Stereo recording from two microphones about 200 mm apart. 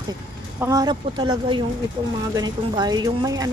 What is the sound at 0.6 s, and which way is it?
Speech, 15° right (ahead or behind).